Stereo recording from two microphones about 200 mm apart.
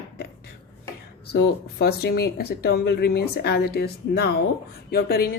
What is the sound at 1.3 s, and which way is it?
A woman's voice, 50° left (ahead or behind).